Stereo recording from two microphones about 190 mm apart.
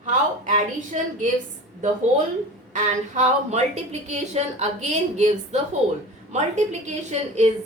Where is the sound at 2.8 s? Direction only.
40° right (ahead or behind).